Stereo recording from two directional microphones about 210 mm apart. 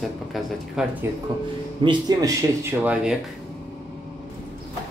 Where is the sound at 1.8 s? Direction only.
20° right (ahead or behind).